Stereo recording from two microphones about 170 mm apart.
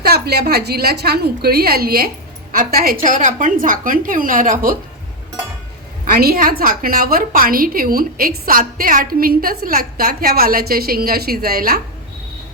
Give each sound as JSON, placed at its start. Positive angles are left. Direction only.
{"t": 0.0, "sound": "a woman's voice", "side_deg": -70}
{"t": 6.1, "sound": "a woman's voice", "side_deg": -60}